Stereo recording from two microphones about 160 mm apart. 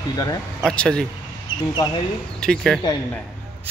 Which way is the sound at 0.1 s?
25° left (ahead or behind).